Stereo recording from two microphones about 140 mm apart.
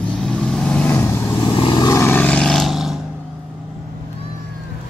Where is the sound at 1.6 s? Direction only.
35° left (ahead or behind).